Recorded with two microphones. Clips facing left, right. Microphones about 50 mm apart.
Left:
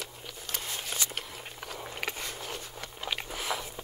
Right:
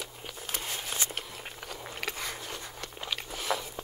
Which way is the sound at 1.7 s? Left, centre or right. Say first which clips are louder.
Left 1 dB; centre.